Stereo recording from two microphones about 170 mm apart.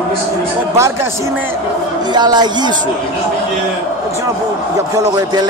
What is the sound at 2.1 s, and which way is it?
Speech, 25° right (ahead or behind).